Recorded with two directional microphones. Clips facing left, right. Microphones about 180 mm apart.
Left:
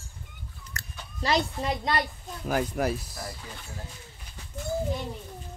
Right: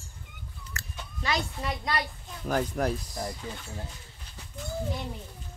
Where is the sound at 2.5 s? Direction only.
5° left (ahead or behind).